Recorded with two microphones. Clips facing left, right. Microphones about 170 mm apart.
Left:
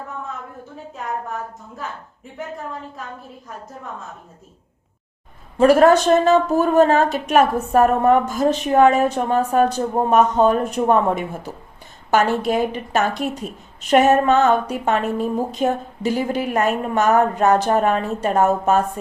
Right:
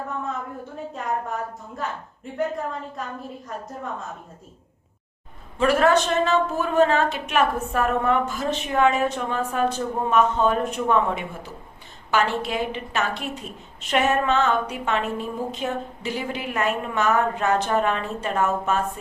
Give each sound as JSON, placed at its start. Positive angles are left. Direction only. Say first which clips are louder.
{"t": 5.5, "sound": "a woman's voice", "louder": "left 6 dB", "side_deg": 40}